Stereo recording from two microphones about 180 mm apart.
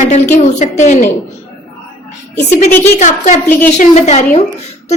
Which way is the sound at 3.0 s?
40° left (ahead or behind).